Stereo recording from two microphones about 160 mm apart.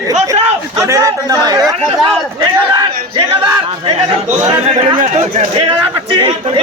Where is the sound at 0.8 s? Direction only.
20° right (ahead or behind).